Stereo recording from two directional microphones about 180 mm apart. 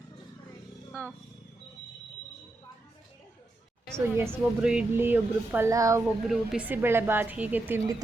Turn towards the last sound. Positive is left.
turn(degrees=-10)  # may be behind; listen again after turning